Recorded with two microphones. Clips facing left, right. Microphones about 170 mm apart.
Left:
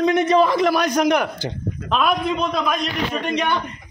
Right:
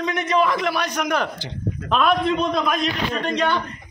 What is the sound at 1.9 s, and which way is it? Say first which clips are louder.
A man's voice: right 1 dB; 5° left (ahead or behind).